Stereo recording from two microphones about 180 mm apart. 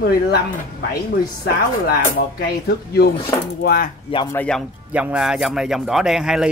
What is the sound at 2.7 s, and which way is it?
Speech, 60° left (ahead or behind).